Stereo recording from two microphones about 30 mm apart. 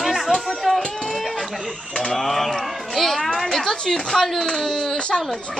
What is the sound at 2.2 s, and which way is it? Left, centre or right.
Speech, centre.